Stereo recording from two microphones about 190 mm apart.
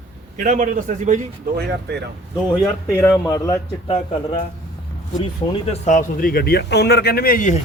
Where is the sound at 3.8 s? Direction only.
30° left (ahead or behind).